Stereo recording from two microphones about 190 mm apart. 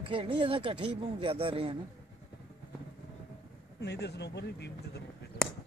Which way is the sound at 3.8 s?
60° left (ahead or behind).